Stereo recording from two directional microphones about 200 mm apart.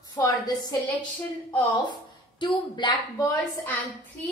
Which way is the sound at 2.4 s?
20° left (ahead or behind).